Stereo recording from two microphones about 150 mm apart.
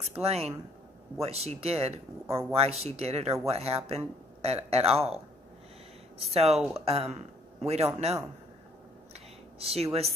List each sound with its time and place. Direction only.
0.2 s speech: 45° right (ahead or behind)
6.3 s a man's voice: 45° right (ahead or behind)
9.6 s speech: 40° right (ahead or behind)